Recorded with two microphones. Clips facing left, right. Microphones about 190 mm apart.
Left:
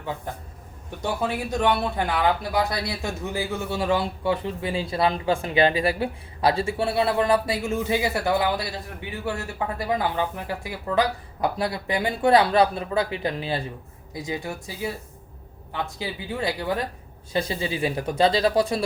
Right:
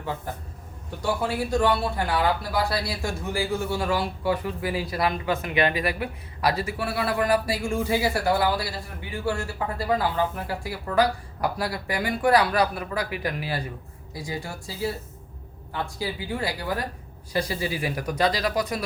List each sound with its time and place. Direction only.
0.9 s speech: 20° left (ahead or behind)
16.0 s speech: 20° left (ahead or behind)